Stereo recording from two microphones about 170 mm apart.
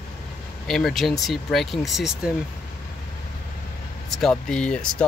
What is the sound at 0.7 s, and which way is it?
Speech, centre (ahead or behind).